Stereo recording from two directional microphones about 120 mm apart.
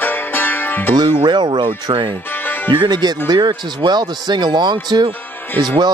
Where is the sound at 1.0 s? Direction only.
40° right (ahead or behind).